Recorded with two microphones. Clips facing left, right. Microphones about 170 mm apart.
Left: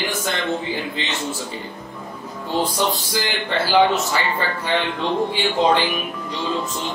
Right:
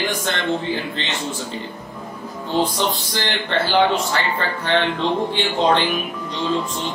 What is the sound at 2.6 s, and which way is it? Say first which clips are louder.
A man's voice: left 1 dB; 10° left (ahead or behind).